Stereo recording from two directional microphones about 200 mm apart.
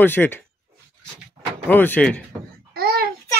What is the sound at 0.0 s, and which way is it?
Speech, 10° left (ahead or behind).